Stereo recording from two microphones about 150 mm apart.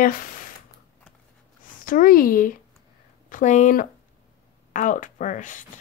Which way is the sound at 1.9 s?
65° left (ahead or behind).